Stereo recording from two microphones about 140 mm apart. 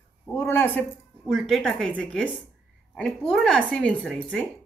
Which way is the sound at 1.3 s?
Centre (ahead or behind).